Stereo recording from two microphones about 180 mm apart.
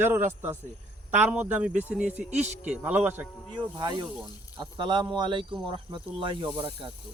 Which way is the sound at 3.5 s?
25° right (ahead or behind).